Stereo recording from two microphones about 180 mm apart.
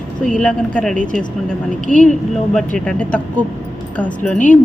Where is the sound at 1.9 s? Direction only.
45° left (ahead or behind).